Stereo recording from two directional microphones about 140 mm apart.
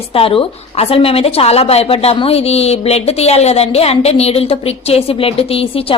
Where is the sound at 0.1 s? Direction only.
45° left (ahead or behind).